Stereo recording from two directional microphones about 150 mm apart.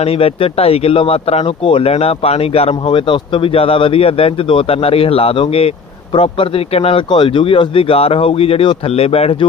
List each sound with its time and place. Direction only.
0.0 s speech: 40° left (ahead or behind)